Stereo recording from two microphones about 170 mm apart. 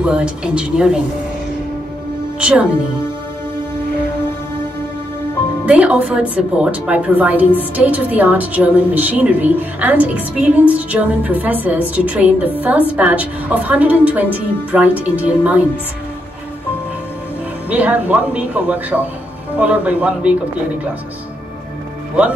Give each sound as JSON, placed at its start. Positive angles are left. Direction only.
{"t": 0.0, "sound": "a woman's voice", "side_deg": -5}
{"t": 2.4, "sound": "a woman's voice", "side_deg": -5}
{"t": 5.7, "sound": "a woman's voice", "side_deg": -5}
{"t": 17.6, "sound": "a woman's voice", "side_deg": -10}